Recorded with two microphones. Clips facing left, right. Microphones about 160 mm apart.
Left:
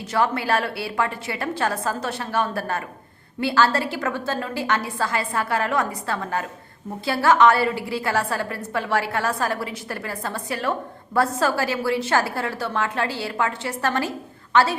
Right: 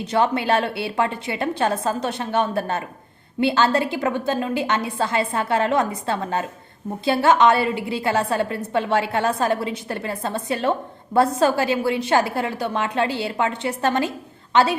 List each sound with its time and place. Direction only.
0.0 s a woman's voice: 20° right (ahead or behind)